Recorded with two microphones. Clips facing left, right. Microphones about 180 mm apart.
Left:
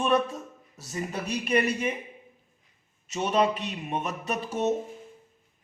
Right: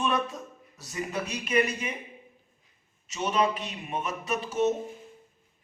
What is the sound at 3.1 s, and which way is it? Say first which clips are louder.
Speech: left 2 dB; 35° left (ahead or behind).